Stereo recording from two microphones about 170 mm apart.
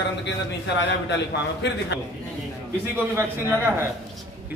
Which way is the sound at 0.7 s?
90° left.